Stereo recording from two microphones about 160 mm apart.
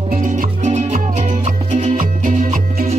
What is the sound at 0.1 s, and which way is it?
Music, 55° right (ahead or behind).